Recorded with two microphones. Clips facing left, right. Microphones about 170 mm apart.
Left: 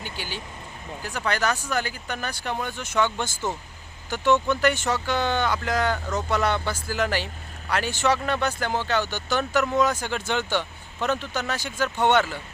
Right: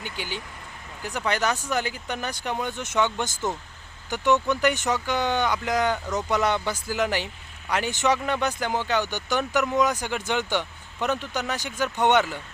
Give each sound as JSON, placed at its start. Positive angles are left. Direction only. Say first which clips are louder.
{"t": 0.0, "sound": "speech", "louder": "right 1 dB", "side_deg": -20}